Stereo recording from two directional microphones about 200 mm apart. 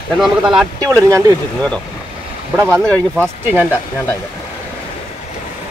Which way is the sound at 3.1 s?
10° right (ahead or behind).